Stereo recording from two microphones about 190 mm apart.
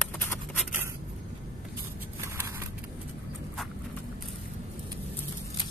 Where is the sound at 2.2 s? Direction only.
15° right (ahead or behind).